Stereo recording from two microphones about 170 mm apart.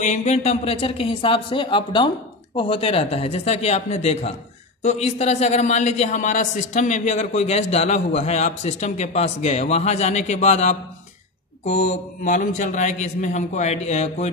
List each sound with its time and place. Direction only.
0.0 s a man's voice: 45° left (ahead or behind)